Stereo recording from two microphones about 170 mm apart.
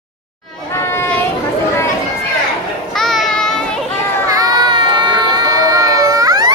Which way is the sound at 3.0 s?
Centre (ahead or behind).